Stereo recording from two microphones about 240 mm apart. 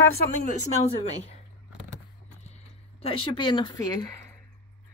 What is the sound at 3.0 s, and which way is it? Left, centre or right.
Speech, left.